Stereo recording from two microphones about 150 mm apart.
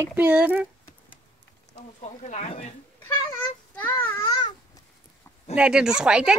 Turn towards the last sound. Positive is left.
turn(degrees=-5)  # may be behind; listen again after turning